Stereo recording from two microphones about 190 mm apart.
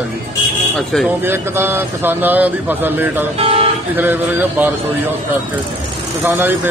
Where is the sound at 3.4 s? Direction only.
30° right (ahead or behind).